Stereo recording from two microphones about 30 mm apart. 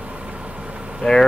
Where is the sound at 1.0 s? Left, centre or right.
Centre.